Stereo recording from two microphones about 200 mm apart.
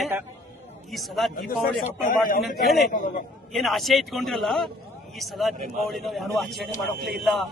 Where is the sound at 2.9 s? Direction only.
40° left (ahead or behind).